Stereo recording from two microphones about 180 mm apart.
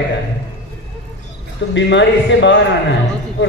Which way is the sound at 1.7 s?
80° left.